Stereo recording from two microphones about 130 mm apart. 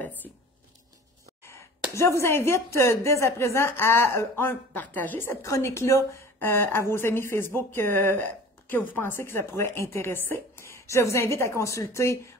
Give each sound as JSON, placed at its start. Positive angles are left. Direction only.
{"t": 0.0, "sound": "squish", "side_deg": 15}
{"t": 2.0, "sound": "a woman's voice", "side_deg": 20}